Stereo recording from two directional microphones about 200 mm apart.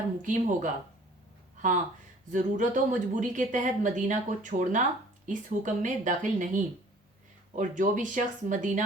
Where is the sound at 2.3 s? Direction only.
40° right (ahead or behind).